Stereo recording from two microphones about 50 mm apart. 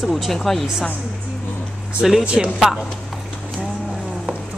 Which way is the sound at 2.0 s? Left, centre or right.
Centre.